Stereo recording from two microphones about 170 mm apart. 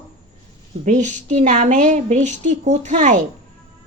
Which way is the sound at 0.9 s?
45° right (ahead or behind).